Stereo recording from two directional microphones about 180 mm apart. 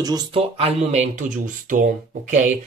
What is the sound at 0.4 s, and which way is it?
Speech, 35° right (ahead or behind).